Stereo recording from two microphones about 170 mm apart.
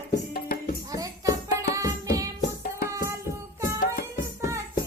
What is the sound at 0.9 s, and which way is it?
Music, 20° right (ahead or behind).